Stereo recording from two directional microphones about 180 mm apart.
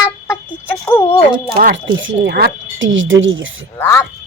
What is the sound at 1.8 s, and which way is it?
Speech, 80° right.